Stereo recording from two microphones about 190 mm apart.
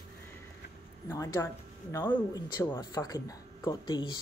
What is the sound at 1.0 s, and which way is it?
Speech, 15° left (ahead or behind).